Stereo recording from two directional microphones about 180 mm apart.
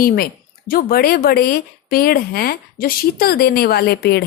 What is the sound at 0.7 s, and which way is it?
Speech, 55° left (ahead or behind).